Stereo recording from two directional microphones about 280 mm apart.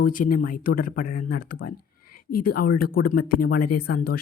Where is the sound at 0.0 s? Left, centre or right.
Left.